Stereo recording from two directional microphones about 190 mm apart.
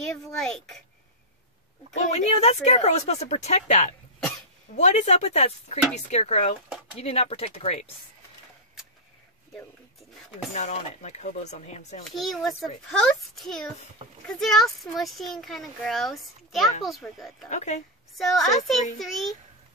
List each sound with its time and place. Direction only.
0.0 s speech: 5° left (ahead or behind)
2.0 s a woman's voice: 35° left (ahead or behind)
10.5 s a woman's voice: 35° left (ahead or behind)
12.1 s speech: centre (ahead or behind)
17.5 s a woman's voice: 40° left (ahead or behind)
18.1 s speech: centre (ahead or behind)